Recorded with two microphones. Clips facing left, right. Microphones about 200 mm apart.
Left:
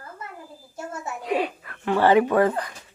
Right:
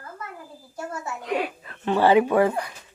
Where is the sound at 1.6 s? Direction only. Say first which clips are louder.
Even; 20° right (ahead or behind).